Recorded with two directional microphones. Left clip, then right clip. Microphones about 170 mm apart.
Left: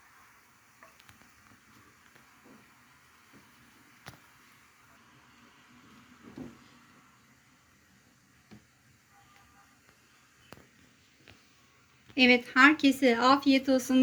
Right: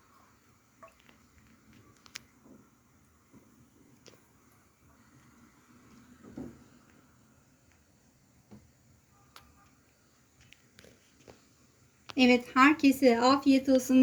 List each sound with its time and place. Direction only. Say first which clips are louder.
12.1 s speech: left 2 dB; 30° right (ahead or behind)